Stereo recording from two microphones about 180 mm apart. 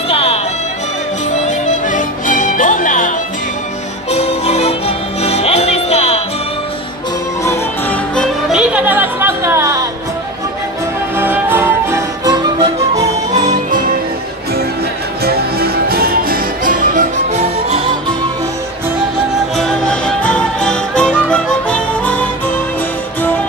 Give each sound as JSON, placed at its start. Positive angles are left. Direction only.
{"t": 0.1, "sound": "music", "side_deg": 35}
{"t": 1.9, "sound": "music", "side_deg": 45}
{"t": 4.1, "sound": "music", "side_deg": 35}
{"t": 8.2, "sound": "music", "side_deg": -5}
{"t": 11.1, "sound": "music", "side_deg": -10}
{"t": 12.9, "sound": "music", "side_deg": -40}
{"t": 15.2, "sound": "music", "side_deg": -60}
{"t": 19.5, "sound": "music", "side_deg": 5}